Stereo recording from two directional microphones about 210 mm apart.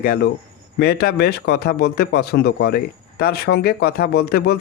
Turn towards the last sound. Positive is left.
turn(degrees=50)  # may be behind; listen again after turning